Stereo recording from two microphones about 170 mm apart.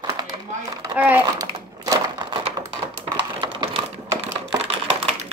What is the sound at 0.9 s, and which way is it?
Speech, 10° right (ahead or behind).